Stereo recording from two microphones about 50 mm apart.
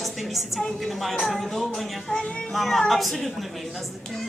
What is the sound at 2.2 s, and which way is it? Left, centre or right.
Speech, centre.